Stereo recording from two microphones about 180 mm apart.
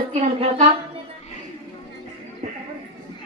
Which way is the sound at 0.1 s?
35° right (ahead or behind).